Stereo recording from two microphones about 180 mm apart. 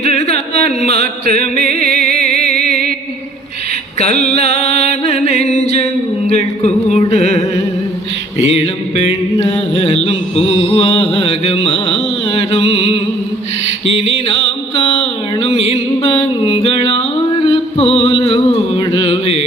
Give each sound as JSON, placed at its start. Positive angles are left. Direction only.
{"t": 0.0, "sound": "a sound", "side_deg": 35}
{"t": 1.6, "sound": "mantra", "side_deg": 35}
{"t": 2.2, "sound": "music", "side_deg": 35}
{"t": 4.0, "sound": "music", "side_deg": 35}
{"t": 8.4, "sound": "mantra", "side_deg": 35}
{"t": 14.3, "sound": "music", "side_deg": 30}
{"t": 17.0, "sound": "a sound", "side_deg": 30}
{"t": 18.3, "sound": "music", "side_deg": 30}